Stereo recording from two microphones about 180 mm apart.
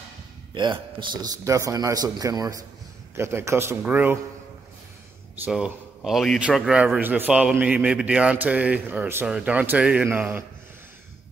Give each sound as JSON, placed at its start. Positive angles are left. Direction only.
{"t": 0.6, "sound": "a man's voice", "side_deg": -25}
{"t": 5.3, "sound": "a man's voice", "side_deg": -5}